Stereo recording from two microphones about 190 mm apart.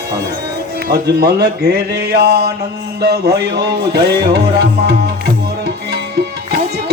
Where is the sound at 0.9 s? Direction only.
55° right (ahead or behind).